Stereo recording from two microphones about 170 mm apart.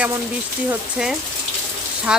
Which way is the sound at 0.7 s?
5° right (ahead or behind).